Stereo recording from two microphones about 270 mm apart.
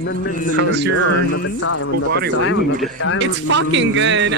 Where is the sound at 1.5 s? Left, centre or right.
Left.